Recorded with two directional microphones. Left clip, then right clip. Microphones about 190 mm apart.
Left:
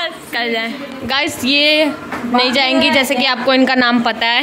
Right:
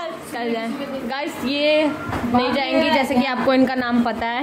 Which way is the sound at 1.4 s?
50° left (ahead or behind).